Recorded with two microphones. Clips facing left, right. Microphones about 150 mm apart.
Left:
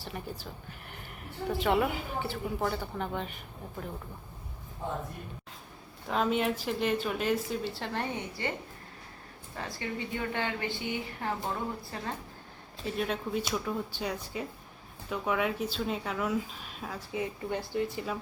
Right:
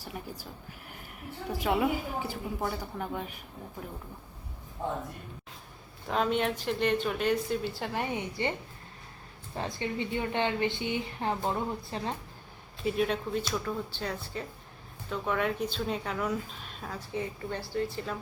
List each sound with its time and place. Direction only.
0.1 s speech: centre (ahead or behind)
0.9 s a sound: 5° right (ahead or behind)
1.6 s speech: 5° right (ahead or behind)
6.1 s speech: centre (ahead or behind)
8.4 s a woman's voice: 20° right (ahead or behind)
9.6 s a woman's voice: 25° right (ahead or behind)
12.8 s speech: centre (ahead or behind); by 18.0 s 15° left (ahead or behind)